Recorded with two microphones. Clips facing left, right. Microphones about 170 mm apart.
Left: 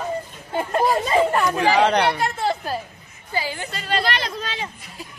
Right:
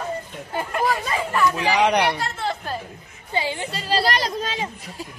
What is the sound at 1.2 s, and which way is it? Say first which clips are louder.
Speech: left 5 dB; 55° left (ahead or behind).